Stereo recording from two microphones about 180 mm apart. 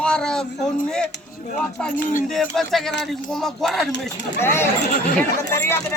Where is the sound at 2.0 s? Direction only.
50° left (ahead or behind).